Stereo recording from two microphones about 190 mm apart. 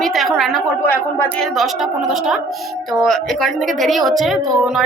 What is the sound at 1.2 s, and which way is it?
A woman's voice, centre (ahead or behind).